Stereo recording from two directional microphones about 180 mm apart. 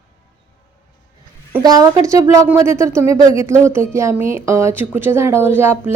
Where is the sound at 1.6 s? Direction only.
20° right (ahead or behind).